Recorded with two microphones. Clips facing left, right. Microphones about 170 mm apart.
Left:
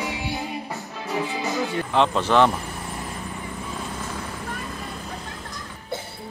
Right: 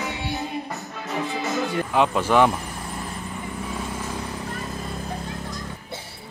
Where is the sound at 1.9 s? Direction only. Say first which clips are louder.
Even; 10° right (ahead or behind).